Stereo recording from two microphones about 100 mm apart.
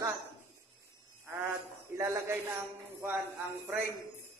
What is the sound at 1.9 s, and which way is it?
Speech, 30° right (ahead or behind).